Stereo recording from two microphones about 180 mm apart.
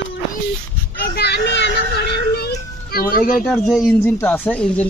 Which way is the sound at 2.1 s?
60° left (ahead or behind).